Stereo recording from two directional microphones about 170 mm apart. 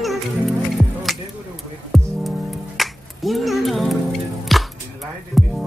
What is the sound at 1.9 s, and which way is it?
Music, centre (ahead or behind).